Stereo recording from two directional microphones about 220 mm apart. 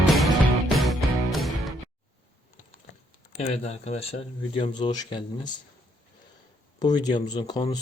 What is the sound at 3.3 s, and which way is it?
Speech, 30° left (ahead or behind).